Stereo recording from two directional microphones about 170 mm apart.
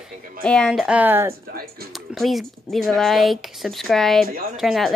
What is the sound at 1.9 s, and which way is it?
Speech, centre (ahead or behind).